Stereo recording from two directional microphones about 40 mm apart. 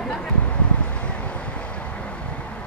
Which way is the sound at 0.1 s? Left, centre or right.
Left.